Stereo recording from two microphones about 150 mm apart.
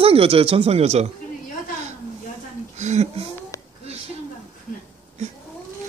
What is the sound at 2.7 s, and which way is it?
Speech, 50° right (ahead or behind).